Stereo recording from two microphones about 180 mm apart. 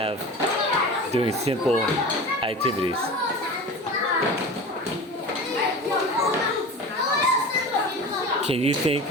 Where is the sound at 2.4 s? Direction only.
30° right (ahead or behind).